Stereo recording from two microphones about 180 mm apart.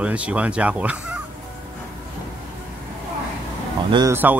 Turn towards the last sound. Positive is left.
turn(degrees=-25)  # may be behind; listen again after turning